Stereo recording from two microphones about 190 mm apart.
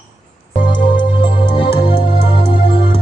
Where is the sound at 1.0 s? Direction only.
25° left (ahead or behind).